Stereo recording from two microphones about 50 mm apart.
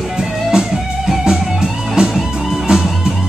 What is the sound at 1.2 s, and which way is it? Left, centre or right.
Music, centre.